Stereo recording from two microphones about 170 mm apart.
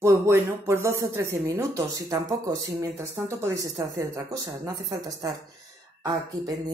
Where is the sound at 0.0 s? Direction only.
15° right (ahead or behind).